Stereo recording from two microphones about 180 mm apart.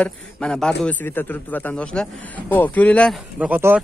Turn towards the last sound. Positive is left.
turn(degrees=-10)  # may be behind; listen again after turning